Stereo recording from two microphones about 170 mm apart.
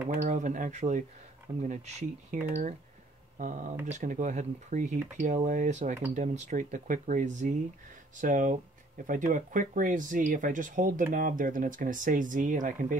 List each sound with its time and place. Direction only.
0.1 s speech: 50° right (ahead or behind)